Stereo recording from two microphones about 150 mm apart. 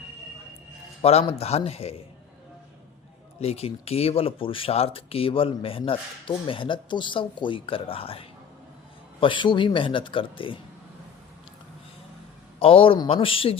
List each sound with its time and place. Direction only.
1.0 s speech: 40° left (ahead or behind)
3.4 s speech: 45° left (ahead or behind)
12.5 s speech: 40° left (ahead or behind)